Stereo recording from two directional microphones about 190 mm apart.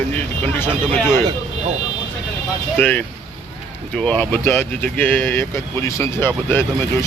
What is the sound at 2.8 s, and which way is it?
Speech, 10° left (ahead or behind).